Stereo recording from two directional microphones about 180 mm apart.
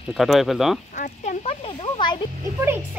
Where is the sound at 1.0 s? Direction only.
35° left (ahead or behind).